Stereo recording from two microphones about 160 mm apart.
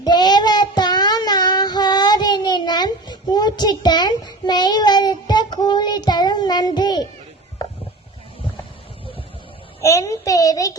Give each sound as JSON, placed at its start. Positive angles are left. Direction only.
{"t": 0.0, "sound": "child singing", "side_deg": 25}
{"t": 9.8, "sound": "child singing", "side_deg": 20}